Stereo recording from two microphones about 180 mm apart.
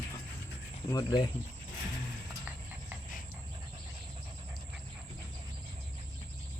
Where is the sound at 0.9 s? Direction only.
20° left (ahead or behind).